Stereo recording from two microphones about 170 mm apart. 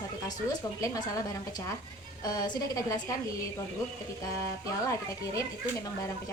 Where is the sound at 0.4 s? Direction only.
20° left (ahead or behind).